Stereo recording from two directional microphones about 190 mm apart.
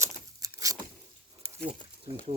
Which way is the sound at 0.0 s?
20° right (ahead or behind).